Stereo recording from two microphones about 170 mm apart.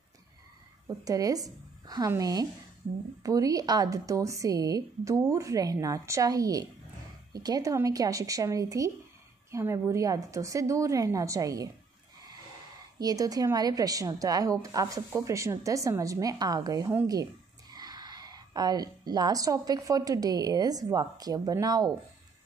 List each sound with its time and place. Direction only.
0.8 s a woman's voice: 20° right (ahead or behind)
13.0 s a woman's voice: 20° right (ahead or behind)